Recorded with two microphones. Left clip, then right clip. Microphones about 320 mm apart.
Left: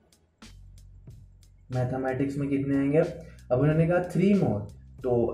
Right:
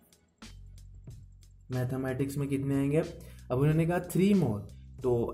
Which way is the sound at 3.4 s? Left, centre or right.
Right.